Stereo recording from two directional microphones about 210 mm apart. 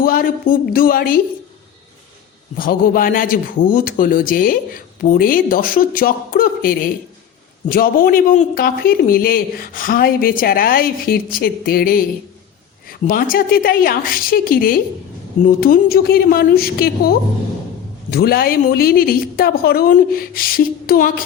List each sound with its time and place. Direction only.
0.0 s speech: 45° left (ahead or behind)
2.6 s speech: 40° left (ahead or behind)